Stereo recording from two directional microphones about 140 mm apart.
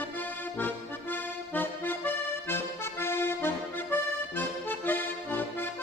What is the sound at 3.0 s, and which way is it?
Accordion, 15° left (ahead or behind).